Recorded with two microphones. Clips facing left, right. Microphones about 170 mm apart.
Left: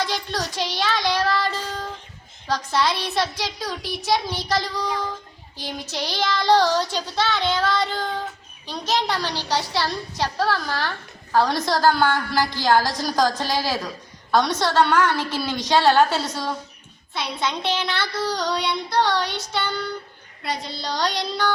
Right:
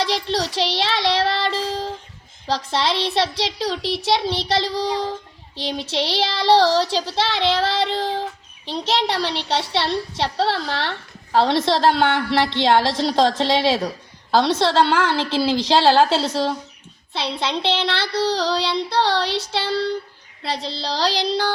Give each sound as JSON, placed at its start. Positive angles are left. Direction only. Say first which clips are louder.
{"t": 0.0, "sound": "child singing", "louder": "right 4 dB", "side_deg": -30}
{"t": 2.5, "sound": "speech", "louder": "right 1 dB", "side_deg": -30}